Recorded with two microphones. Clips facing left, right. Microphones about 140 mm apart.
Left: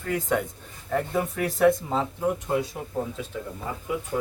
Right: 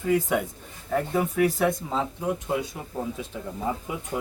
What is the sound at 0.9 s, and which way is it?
Speech, centre (ahead or behind).